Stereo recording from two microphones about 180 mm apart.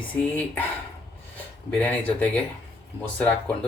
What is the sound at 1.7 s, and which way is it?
Speech, 10° left (ahead or behind).